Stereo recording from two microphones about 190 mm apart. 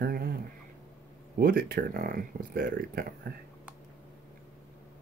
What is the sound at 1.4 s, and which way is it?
Speech, 50° right (ahead or behind).